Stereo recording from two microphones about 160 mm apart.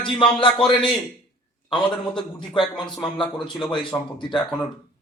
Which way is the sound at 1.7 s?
30° left (ahead or behind).